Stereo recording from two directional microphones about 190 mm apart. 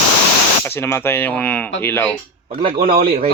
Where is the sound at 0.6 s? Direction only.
10° left (ahead or behind).